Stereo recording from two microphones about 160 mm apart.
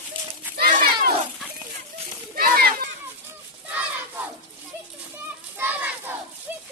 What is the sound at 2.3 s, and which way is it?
Children playing, 70° right (ahead or behind).